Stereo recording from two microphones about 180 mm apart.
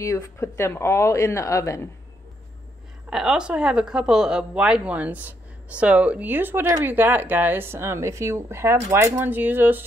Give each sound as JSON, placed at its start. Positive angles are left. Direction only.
{"t": 0.0, "sound": "speech", "side_deg": 15}
{"t": 3.1, "sound": "speech", "side_deg": -5}